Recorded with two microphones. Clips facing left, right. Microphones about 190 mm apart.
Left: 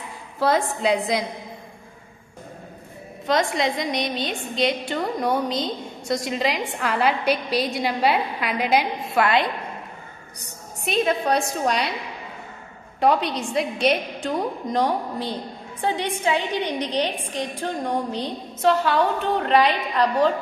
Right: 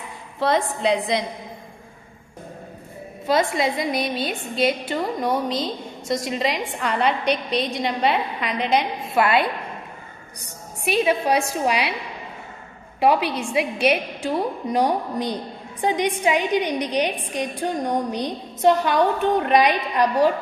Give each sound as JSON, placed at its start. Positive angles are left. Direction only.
{"t": 0.4, "sound": "a woman's voice", "side_deg": 0}
{"t": 3.3, "sound": "a woman's voice", "side_deg": -5}
{"t": 10.8, "sound": "a woman's voice", "side_deg": -10}
{"t": 13.0, "sound": "a woman's voice", "side_deg": -5}